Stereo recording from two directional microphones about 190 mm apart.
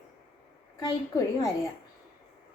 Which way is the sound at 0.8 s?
20° left (ahead or behind).